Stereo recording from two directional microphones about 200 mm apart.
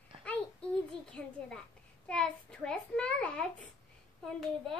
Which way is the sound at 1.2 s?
5° left (ahead or behind).